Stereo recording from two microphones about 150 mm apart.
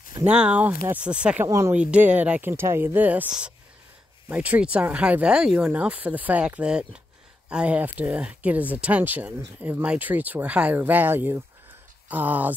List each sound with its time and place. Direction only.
0.2 s speech: 5° right (ahead or behind)
1.5 s speech: 20° right (ahead or behind)
1.8 s speech: 10° right (ahead or behind)